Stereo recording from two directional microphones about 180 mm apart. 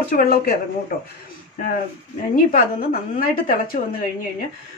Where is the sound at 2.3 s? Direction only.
50° left (ahead or behind).